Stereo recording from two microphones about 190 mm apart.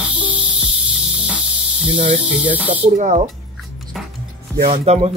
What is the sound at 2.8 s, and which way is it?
Speech, 40° right (ahead or behind).